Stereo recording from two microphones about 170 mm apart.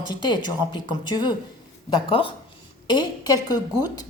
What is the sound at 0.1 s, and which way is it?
A woman's voice, 25° left (ahead or behind).